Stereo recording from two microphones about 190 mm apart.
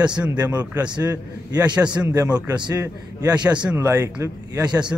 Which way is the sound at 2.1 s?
15° right (ahead or behind).